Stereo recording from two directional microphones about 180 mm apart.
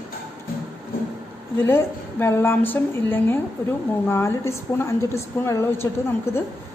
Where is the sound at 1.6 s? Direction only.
15° left (ahead or behind).